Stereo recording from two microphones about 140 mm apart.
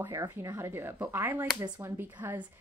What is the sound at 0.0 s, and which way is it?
Speech, 20° right (ahead or behind).